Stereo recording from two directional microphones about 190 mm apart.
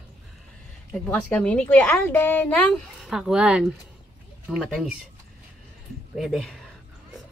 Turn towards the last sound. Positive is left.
turn(degrees=0)  # may be behind; listen again after turning